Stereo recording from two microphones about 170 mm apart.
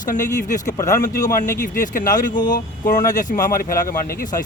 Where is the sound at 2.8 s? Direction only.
50° left (ahead or behind).